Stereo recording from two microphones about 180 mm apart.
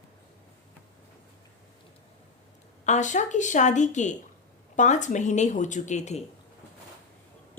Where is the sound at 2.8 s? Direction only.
40° left (ahead or behind).